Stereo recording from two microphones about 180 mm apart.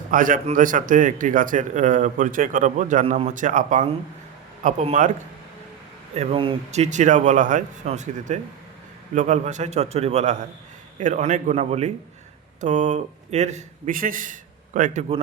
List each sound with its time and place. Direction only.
0.1 s speech: 50° right (ahead or behind)
6.1 s a man's voice: 35° right (ahead or behind)